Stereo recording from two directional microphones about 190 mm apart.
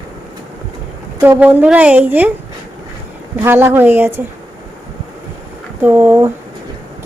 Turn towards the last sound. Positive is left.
turn(degrees=-10)  # may be behind; listen again after turning